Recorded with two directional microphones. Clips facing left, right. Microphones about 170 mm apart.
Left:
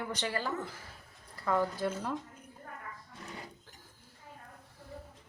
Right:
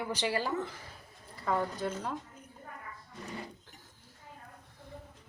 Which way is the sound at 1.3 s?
Centre (ahead or behind).